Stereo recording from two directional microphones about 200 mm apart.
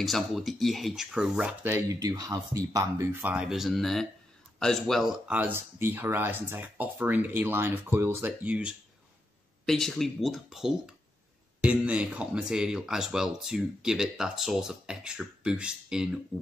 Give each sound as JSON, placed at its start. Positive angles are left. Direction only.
{"t": 0.0, "sound": "speech", "side_deg": 0}